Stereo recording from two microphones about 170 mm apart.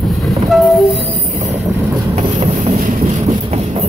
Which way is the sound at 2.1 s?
35° right (ahead or behind).